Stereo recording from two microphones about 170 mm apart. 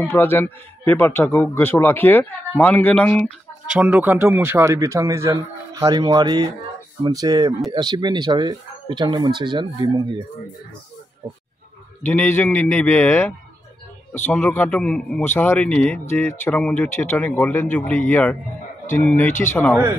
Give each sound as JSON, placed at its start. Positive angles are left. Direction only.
{"t": 0.0, "sound": "a man's voice", "side_deg": 10}
{"t": 3.6, "sound": "a man's voice", "side_deg": -5}
{"t": 12.0, "sound": "a man's voice", "side_deg": 10}
{"t": 19.7, "sound": "a man's voice", "side_deg": -10}